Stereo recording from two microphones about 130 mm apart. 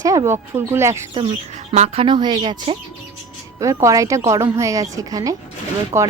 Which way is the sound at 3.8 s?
25° right (ahead or behind).